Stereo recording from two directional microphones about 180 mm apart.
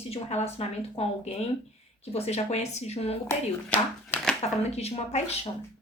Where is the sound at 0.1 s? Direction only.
35° left (ahead or behind).